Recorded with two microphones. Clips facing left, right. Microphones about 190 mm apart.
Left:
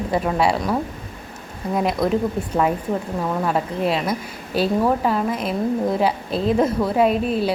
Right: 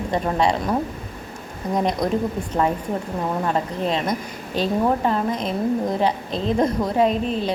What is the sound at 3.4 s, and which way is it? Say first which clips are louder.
A woman's voice: left 2 dB; 5° left (ahead or behind).